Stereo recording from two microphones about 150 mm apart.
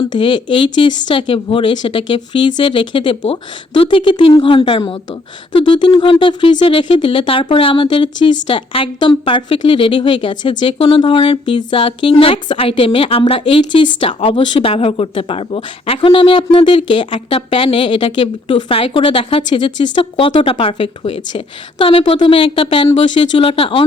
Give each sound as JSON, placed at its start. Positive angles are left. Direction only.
{"t": 0.1, "sound": "speech", "side_deg": 35}